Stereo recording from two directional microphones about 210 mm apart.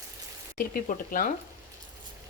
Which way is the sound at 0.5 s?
40° left (ahead or behind).